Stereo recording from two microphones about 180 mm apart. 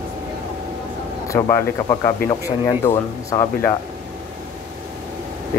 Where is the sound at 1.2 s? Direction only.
15° left (ahead or behind).